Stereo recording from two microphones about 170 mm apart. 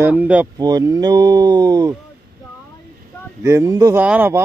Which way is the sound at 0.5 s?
25° right (ahead or behind).